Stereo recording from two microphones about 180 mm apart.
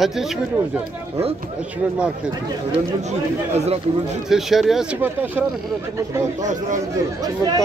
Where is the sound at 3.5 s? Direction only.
35° right (ahead or behind).